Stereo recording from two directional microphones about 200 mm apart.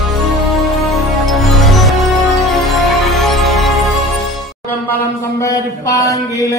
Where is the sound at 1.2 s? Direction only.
Centre (ahead or behind).